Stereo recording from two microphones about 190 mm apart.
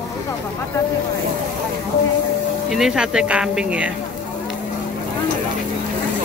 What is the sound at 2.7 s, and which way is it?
Speech, 5° right (ahead or behind).